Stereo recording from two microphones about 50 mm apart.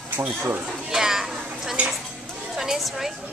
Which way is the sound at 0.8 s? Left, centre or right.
Centre.